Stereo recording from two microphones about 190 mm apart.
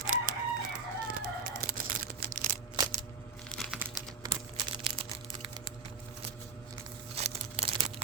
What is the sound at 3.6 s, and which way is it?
Crumpling, 5° right (ahead or behind).